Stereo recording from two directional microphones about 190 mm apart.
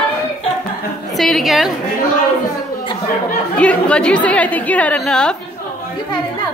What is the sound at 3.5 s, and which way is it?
A woman's voice, 5° left (ahead or behind).